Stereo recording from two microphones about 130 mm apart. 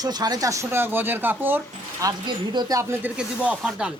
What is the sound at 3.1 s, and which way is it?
Speech, 10° right (ahead or behind).